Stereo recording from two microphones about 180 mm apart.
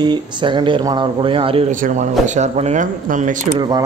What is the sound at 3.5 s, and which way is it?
Speech, 25° right (ahead or behind).